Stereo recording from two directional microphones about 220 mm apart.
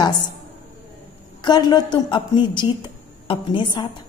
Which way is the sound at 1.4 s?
20° left (ahead or behind).